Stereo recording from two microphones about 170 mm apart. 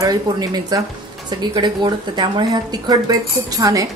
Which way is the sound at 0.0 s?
20° right (ahead or behind).